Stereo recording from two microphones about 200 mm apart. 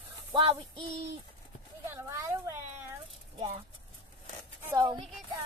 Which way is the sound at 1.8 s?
15° right (ahead or behind).